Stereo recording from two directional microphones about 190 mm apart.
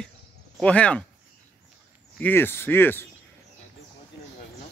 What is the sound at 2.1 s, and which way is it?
Speech, 10° left (ahead or behind).